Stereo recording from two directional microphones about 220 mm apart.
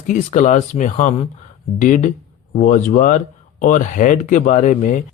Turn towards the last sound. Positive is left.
turn(degrees=35)  # may be behind; listen again after turning